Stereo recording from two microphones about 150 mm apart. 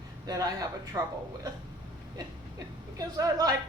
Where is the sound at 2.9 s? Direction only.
25° right (ahead or behind).